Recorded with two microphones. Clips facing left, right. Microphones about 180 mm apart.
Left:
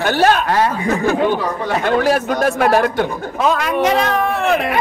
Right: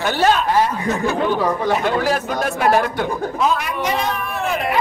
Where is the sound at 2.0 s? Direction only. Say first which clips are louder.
Left 4 dB; 60° left (ahead or behind).